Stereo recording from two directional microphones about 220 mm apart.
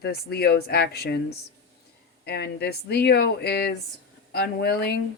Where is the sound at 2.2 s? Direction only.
50° left (ahead or behind).